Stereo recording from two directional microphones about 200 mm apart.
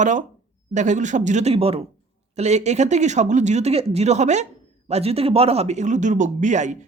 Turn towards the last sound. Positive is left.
turn(degrees=-35)  # may be behind; listen again after turning